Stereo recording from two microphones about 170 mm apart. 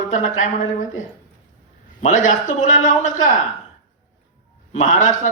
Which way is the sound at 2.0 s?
45° left (ahead or behind).